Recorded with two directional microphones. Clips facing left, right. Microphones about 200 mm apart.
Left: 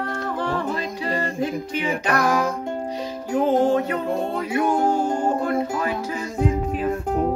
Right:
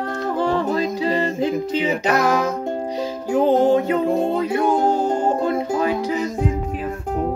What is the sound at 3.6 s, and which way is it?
Music, 25° right (ahead or behind).